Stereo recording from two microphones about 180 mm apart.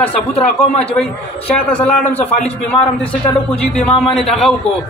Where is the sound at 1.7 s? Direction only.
10° left (ahead or behind).